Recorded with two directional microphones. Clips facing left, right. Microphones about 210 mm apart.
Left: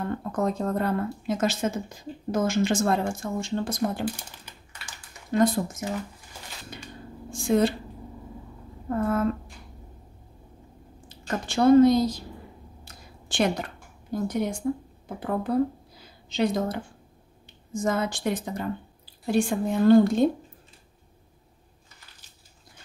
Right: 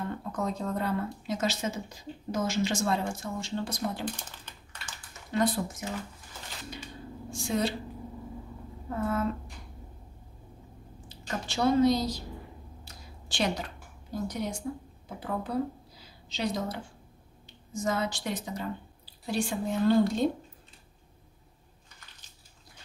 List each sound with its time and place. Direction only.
0.4 s a woman's voice: 55° left (ahead or behind)
4.2 s typing: 10° left (ahead or behind)
5.3 s a woman's voice: 45° left (ahead or behind)
7.2 s a woman's voice: 50° left (ahead or behind)
8.8 s speech: 50° left (ahead or behind)
11.2 s a woman's voice: 50° left (ahead or behind)
12.8 s a sound: 55° left (ahead or behind)
14.2 s a woman's voice: 55° left (ahead or behind)
16.0 s a sound: 55° left (ahead or behind)
17.7 s a woman's voice: 50° left (ahead or behind)